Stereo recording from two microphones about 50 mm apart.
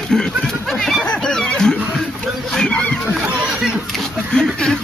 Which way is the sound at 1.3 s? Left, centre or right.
Centre.